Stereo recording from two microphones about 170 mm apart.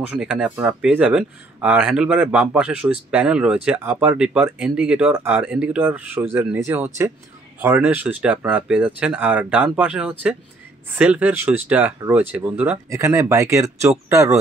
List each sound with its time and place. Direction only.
0.1 s speech: 5° right (ahead or behind)